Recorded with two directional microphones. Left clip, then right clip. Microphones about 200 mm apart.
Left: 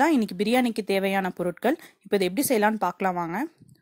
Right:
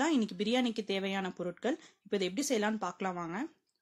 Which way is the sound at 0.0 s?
40° left (ahead or behind).